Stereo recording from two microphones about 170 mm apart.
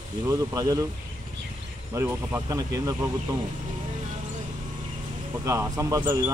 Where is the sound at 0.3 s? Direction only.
20° right (ahead or behind).